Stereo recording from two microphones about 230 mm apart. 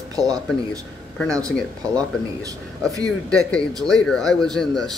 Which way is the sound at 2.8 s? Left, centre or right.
Centre.